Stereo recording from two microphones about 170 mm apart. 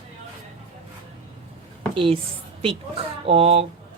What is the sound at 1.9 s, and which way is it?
Speech, 30° right (ahead or behind).